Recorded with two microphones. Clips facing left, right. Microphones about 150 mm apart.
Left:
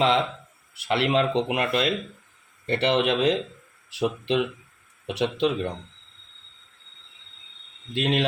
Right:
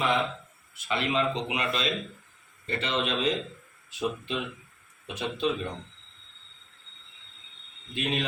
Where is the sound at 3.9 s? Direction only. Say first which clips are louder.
Left 6 dB; 85° left.